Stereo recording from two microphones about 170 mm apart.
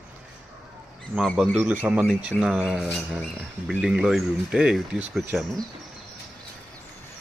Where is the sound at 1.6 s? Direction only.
10° right (ahead or behind).